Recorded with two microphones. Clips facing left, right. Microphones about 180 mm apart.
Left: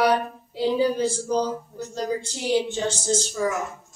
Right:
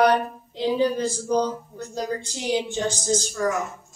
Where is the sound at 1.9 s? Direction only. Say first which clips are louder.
Left 1 dB; 10° right (ahead or behind).